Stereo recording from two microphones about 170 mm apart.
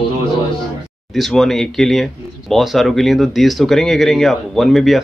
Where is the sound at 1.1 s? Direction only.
Centre (ahead or behind).